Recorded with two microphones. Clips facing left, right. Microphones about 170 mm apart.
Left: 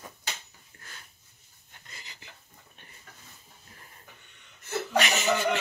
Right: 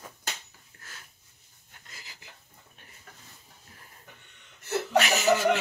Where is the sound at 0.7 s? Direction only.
Centre (ahead or behind).